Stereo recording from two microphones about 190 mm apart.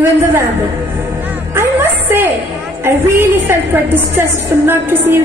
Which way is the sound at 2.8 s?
15° right (ahead or behind).